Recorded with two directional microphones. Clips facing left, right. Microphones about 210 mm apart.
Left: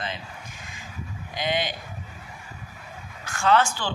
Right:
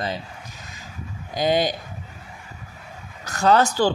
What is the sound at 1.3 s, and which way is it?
Speech, 40° right (ahead or behind).